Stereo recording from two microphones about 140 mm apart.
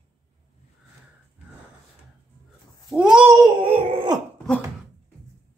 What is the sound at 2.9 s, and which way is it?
Babbling, 5° right (ahead or behind).